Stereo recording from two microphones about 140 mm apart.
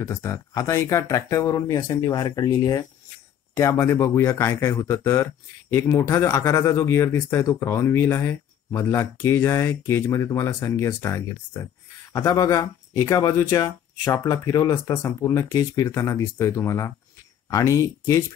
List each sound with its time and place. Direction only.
0.0 s speech: 20° left (ahead or behind)